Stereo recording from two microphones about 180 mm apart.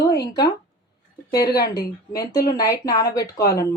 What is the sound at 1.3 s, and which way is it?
Speech, 60° left (ahead or behind).